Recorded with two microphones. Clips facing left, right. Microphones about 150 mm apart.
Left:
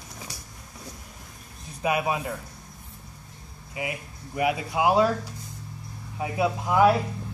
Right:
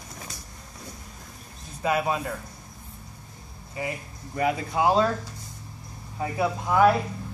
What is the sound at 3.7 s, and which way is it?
Speech, 10° left (ahead or behind).